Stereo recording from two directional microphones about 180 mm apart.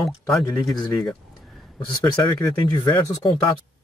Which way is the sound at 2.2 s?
25° left (ahead or behind).